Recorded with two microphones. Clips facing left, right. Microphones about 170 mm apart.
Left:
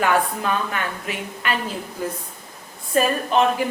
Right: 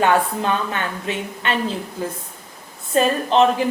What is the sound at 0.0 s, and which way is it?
A woman's voice, 25° right (ahead or behind).